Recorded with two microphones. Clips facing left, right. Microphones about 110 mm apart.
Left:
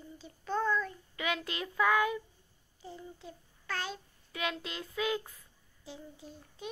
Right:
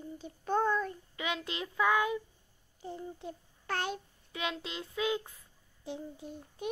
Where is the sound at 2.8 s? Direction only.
55° right (ahead or behind).